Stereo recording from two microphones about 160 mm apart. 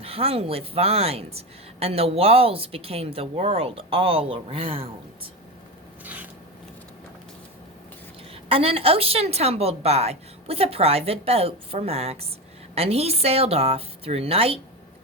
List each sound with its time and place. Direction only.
0.0 s speech: 35° right (ahead or behind)
8.4 s speech: 35° right (ahead or behind)